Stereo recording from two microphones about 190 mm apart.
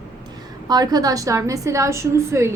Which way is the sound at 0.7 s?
20° right (ahead or behind).